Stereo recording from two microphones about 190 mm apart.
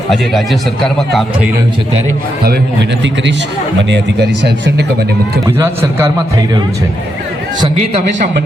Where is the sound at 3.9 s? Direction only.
65° right (ahead or behind).